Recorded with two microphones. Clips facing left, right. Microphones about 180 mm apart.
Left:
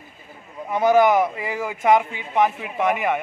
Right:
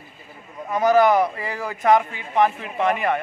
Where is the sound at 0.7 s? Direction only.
15° left (ahead or behind).